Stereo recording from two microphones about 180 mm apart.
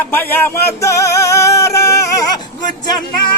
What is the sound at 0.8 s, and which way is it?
Music, 15° left (ahead or behind).